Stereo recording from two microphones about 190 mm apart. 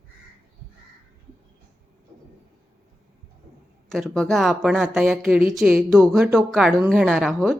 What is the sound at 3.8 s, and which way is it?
Speech, centre (ahead or behind).